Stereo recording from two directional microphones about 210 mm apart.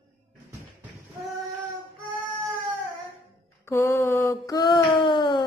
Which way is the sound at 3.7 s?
15° left (ahead or behind).